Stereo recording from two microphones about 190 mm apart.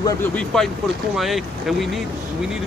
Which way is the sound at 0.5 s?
5° left (ahead or behind).